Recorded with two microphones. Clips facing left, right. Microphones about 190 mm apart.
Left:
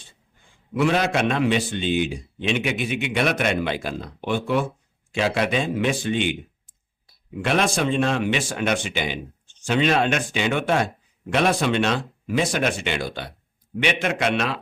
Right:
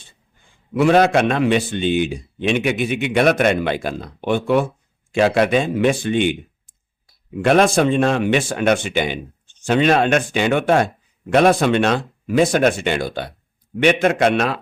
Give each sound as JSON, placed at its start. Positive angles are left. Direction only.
{"t": 0.8, "sound": "a man's voice", "side_deg": -50}
{"t": 7.4, "sound": "a man's voice", "side_deg": -45}